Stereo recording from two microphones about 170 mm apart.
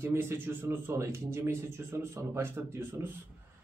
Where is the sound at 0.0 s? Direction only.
15° right (ahead or behind).